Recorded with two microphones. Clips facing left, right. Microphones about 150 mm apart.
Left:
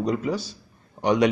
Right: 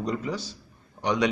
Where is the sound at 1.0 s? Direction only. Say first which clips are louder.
Left 5 dB; 55° left (ahead or behind).